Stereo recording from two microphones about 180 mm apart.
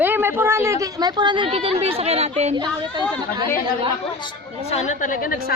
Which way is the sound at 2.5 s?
25° right (ahead or behind).